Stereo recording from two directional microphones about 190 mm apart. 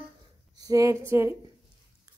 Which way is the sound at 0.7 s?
20° right (ahead or behind).